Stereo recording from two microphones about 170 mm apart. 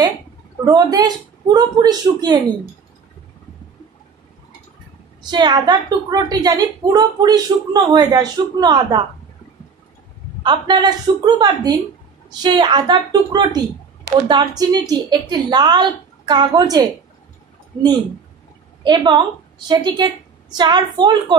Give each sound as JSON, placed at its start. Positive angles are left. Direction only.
{"t": 0.7, "sound": "a woman's voice", "side_deg": -20}
{"t": 5.2, "sound": "a woman's voice", "side_deg": -25}
{"t": 10.4, "sound": "a woman's voice", "side_deg": -25}
{"t": 18.9, "sound": "a woman's voice", "side_deg": -25}